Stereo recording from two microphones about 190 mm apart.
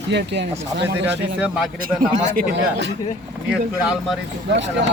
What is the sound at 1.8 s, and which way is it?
Speech, 50° right (ahead or behind).